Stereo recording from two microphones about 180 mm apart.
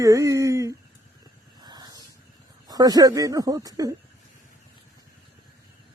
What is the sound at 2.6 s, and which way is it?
Speech, 20° right (ahead or behind).